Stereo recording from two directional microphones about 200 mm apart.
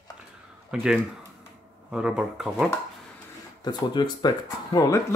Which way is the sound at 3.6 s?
20° left (ahead or behind).